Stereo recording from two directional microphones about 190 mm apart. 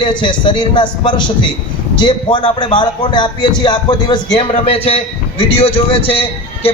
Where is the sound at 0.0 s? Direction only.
25° left (ahead or behind).